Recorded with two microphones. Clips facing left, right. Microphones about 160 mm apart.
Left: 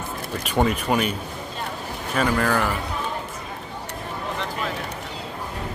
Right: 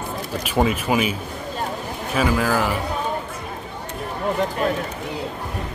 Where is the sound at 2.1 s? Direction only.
5° right (ahead or behind).